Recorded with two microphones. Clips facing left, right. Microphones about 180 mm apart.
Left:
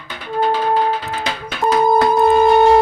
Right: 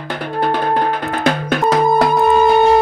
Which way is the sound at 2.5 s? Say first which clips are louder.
Left 1 dB; centre (ahead or behind).